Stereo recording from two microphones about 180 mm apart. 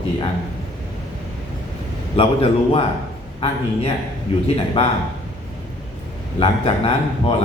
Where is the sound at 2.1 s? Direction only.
30° left (ahead or behind).